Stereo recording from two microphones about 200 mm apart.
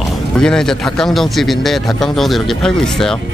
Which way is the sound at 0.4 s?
5° left (ahead or behind).